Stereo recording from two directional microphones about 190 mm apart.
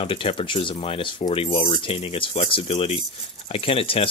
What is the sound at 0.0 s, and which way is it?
Speech, 30° left (ahead or behind).